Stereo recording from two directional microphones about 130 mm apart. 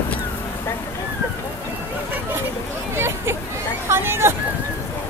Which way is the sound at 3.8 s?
20° right (ahead or behind).